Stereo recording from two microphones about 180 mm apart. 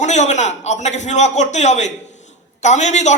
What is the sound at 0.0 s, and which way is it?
A woman's voice, 40° left (ahead or behind).